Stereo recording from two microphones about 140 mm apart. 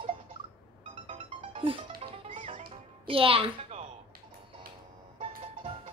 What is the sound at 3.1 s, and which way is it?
Speech, 40° right (ahead or behind).